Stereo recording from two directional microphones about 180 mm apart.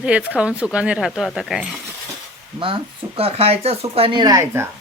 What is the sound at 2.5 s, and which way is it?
Speech, 30° right (ahead or behind).